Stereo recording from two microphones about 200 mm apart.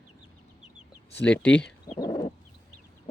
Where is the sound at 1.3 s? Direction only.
5° left (ahead or behind).